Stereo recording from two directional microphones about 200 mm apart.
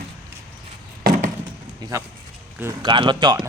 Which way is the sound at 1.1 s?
45° right (ahead or behind).